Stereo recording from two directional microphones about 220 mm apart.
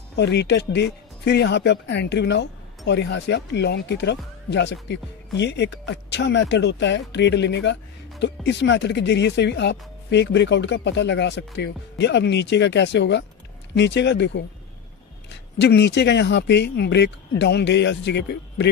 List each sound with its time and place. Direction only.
0.1 s speech: 50° left (ahead or behind)
15.6 s speech: 50° left (ahead or behind)